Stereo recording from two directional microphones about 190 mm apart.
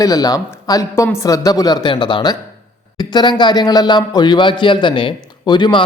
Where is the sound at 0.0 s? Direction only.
20° left (ahead or behind).